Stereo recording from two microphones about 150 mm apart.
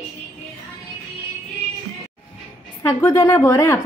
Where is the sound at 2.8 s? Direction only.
20° left (ahead or behind).